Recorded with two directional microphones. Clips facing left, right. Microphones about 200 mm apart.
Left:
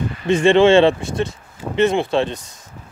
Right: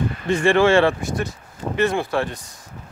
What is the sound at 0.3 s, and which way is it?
Speech, 20° left (ahead or behind).